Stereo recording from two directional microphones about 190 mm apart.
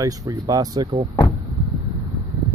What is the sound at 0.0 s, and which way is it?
Speech, 20° right (ahead or behind).